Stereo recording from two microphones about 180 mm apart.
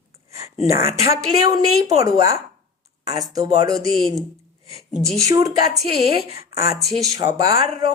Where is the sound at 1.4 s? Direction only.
20° right (ahead or behind).